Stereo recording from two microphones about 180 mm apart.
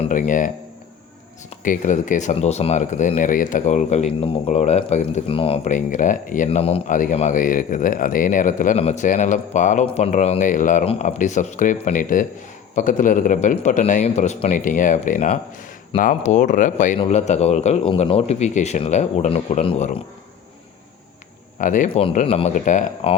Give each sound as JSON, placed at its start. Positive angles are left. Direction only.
{"t": 0.0, "sound": "speech", "side_deg": 45}
{"t": 21.6, "sound": "speech", "side_deg": 45}